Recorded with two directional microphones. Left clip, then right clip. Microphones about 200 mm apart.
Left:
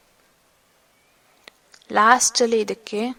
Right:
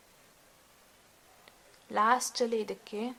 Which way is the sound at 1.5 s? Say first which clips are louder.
Left 11 dB; 40° left (ahead or behind).